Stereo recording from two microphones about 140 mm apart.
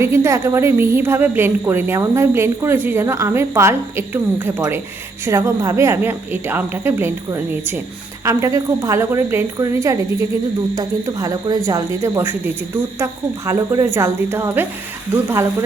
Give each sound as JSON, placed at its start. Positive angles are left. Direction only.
{"t": 0.0, "sound": "a woman's voice", "side_deg": -20}